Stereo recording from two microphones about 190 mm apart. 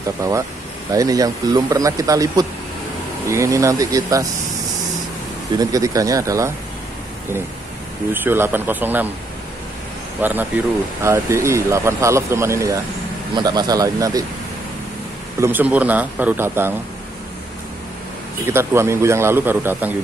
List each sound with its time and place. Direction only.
0.2 s speech: 20° right (ahead or behind)
5.6 s speech: 20° right (ahead or behind)
8.1 s speech: 10° right (ahead or behind)
10.2 s speech: 10° right (ahead or behind)
15.4 s speech: 10° right (ahead or behind)
18.4 s speech: 15° right (ahead or behind)